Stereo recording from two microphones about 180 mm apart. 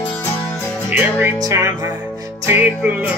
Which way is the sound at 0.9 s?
15° right (ahead or behind).